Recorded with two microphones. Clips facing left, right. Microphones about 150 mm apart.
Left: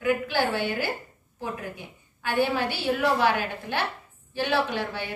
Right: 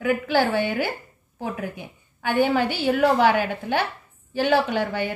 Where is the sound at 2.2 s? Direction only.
50° right (ahead or behind).